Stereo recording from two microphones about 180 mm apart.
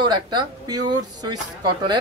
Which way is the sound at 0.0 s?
25° right (ahead or behind).